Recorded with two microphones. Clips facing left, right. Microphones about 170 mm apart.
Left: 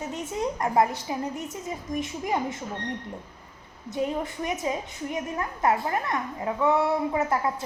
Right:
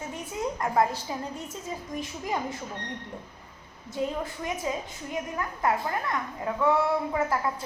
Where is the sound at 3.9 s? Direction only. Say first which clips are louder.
Left 2 dB; 20° left (ahead or behind).